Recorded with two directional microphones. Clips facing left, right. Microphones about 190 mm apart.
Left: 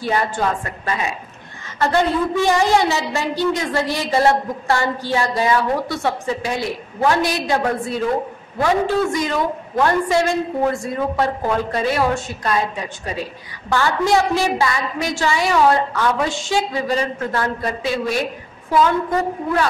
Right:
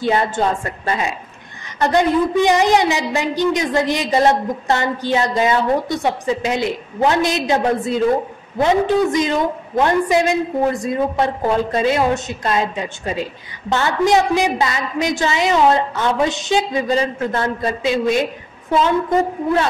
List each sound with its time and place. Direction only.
0.0 s a woman's voice: 25° right (ahead or behind)